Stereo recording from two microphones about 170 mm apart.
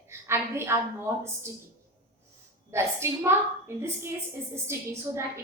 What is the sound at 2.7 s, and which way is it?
A woman's voice, 15° right (ahead or behind).